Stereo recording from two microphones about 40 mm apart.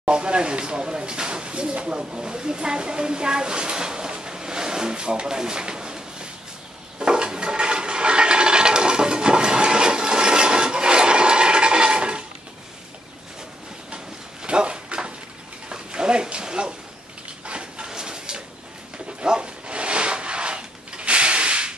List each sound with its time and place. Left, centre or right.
0.0 s speech: right
7.0 s toilet flush: right
13.9 s a sound: right
19.2 s dog: right